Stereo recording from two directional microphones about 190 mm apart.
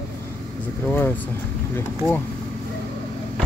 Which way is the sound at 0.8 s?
10° left (ahead or behind).